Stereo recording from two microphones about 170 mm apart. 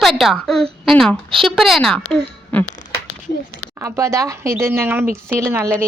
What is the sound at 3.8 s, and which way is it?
Speech, 15° right (ahead or behind).